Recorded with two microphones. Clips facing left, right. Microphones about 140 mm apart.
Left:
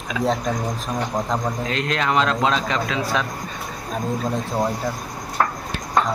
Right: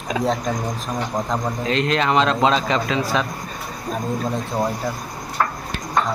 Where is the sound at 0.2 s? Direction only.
Centre (ahead or behind).